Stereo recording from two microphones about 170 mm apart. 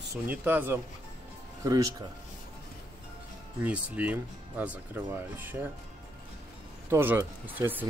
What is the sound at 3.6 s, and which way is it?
Speech, 10° right (ahead or behind).